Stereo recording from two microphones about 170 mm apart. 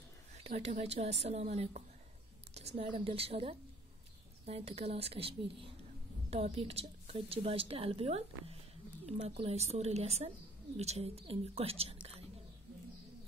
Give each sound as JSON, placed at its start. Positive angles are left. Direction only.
{"t": 0.4, "sound": "a woman's voice", "side_deg": -40}